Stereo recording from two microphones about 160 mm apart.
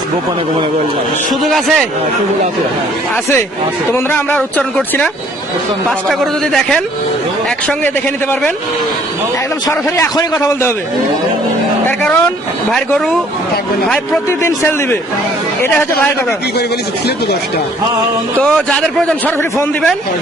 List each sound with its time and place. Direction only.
1.3 s a man's voice: centre (ahead or behind)
3.9 s speech: 15° left (ahead or behind)
6.1 s a man's voice: 5° left (ahead or behind)
9.6 s a man's voice: 20° left (ahead or behind)
11.9 s vehicle: 10° left (ahead or behind)
14.3 s speech: 15° left (ahead or behind)
18.3 s a man's voice: 5° left (ahead or behind)